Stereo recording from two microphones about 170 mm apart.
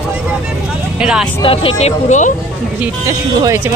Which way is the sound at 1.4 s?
30° left (ahead or behind).